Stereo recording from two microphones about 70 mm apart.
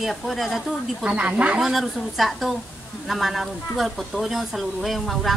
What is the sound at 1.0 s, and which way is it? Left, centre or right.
Speech, centre.